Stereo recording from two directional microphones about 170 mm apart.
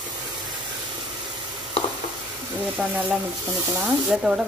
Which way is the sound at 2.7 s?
5° right (ahead or behind).